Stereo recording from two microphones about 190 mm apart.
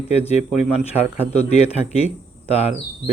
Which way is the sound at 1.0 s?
35° left (ahead or behind).